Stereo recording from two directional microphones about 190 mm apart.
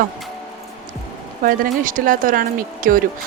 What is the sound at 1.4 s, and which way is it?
Speech, 45° right (ahead or behind).